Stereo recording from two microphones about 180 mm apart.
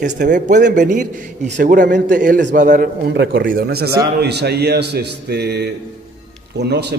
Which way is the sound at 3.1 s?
75° right (ahead or behind).